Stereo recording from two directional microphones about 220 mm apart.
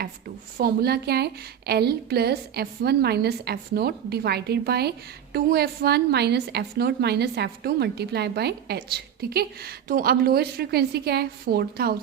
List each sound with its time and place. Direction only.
0.5 s a woman's voice: 45° right (ahead or behind)